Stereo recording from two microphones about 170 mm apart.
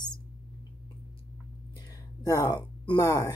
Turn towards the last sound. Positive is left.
turn(degrees=20)  # may be behind; listen again after turning